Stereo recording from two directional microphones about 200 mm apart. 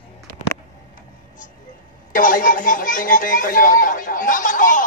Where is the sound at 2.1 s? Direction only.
45° left (ahead or behind).